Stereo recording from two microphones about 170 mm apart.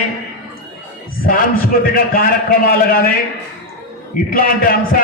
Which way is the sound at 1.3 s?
55° left (ahead or behind).